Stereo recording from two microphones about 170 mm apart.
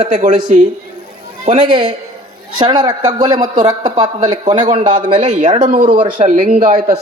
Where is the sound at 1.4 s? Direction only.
30° right (ahead or behind).